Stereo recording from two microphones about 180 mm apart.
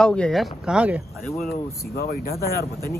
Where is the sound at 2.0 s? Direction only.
55° left (ahead or behind).